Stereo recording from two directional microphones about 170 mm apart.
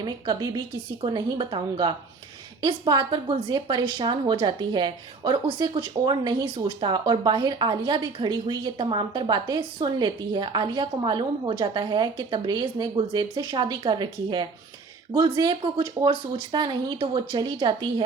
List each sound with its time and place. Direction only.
0.0 s a woman's voice: 25° right (ahead or behind)